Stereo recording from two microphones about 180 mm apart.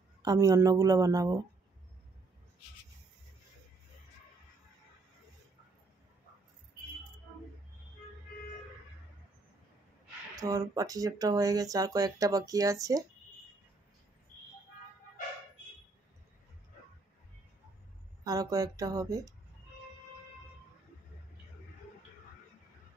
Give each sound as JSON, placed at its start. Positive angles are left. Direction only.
{"t": 0.2, "sound": "speech", "side_deg": -20}
{"t": 10.3, "sound": "speech", "side_deg": -20}
{"t": 18.2, "sound": "speech", "side_deg": -20}